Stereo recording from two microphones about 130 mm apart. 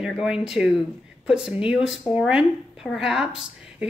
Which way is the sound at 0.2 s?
5° right (ahead or behind).